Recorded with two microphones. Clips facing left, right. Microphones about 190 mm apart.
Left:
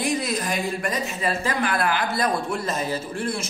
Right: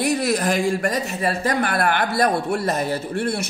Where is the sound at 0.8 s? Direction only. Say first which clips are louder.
Right 4 dB; 60° right (ahead or behind).